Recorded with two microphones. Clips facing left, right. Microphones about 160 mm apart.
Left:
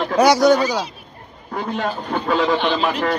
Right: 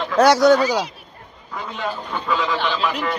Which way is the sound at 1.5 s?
45° left (ahead or behind).